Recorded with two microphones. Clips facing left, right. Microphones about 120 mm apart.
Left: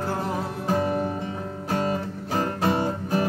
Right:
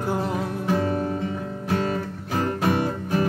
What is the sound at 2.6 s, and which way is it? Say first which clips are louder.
Music: right 1 dB; 30° left (ahead or behind).